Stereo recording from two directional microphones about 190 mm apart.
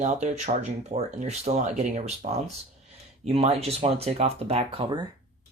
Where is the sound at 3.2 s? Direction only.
30° right (ahead or behind).